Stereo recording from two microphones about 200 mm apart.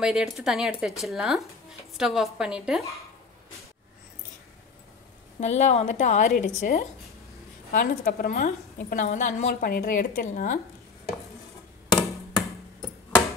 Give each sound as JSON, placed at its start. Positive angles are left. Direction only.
{"t": 0.0, "sound": "speech", "side_deg": 0}
{"t": 5.4, "sound": "a woman's voice", "side_deg": 35}